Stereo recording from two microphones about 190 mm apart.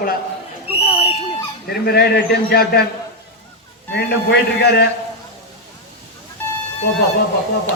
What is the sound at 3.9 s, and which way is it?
Speech, 60° left (ahead or behind).